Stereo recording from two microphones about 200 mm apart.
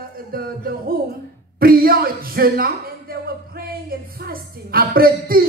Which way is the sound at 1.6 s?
45° right (ahead or behind).